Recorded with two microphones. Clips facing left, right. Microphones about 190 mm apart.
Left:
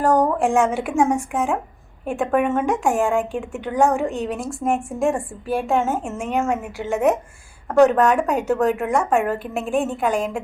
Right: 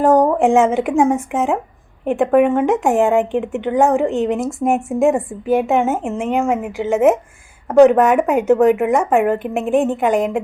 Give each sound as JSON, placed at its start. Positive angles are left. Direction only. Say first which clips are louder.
{"t": 0.0, "sound": "a woman's voice", "louder": "right 5 dB", "side_deg": -20}